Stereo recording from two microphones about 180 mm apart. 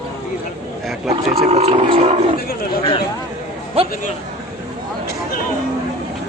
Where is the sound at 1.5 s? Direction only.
35° right (ahead or behind).